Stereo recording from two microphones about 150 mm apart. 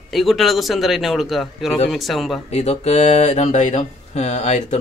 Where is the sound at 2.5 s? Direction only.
45° left (ahead or behind).